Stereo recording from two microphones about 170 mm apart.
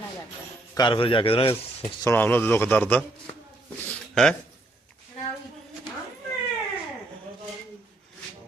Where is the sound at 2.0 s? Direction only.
10° left (ahead or behind).